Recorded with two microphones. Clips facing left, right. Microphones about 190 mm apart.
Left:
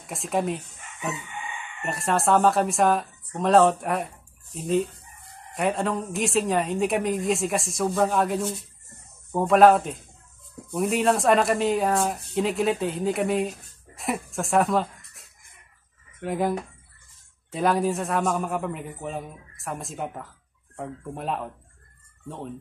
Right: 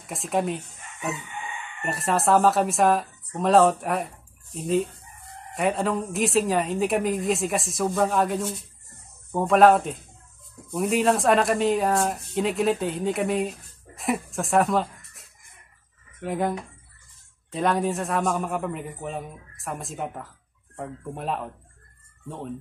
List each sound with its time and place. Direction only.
0.0 s speech: centre (ahead or behind)
1.8 s speech: centre (ahead or behind)
5.5 s speech: centre (ahead or behind)